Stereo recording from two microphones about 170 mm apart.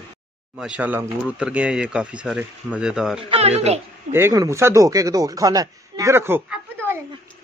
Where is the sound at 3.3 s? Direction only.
40° right (ahead or behind).